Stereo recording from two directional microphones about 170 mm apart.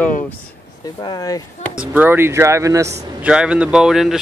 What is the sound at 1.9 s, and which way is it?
Speech, 10° right (ahead or behind).